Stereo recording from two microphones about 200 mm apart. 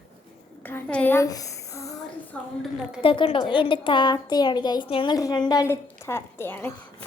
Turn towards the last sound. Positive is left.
turn(degrees=10)  # may be behind; listen again after turning